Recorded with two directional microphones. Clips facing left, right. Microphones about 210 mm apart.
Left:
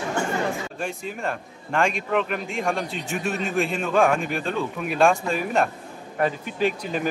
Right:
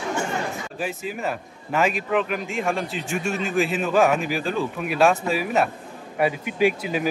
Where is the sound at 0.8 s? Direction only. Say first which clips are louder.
Right 4 dB; 5° right (ahead or behind).